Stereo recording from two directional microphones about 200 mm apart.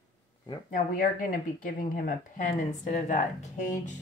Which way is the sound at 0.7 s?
40° left (ahead or behind).